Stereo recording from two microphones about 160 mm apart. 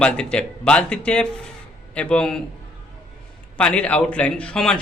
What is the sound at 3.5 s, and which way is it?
A man's voice, 5° left (ahead or behind).